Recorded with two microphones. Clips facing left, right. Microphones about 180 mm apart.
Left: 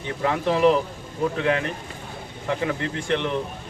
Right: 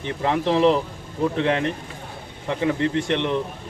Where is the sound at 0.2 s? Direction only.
25° right (ahead or behind).